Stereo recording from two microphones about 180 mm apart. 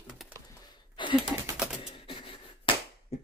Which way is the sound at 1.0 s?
25° left (ahead or behind).